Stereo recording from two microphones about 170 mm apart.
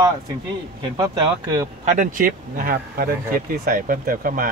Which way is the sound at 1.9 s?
50° right (ahead or behind).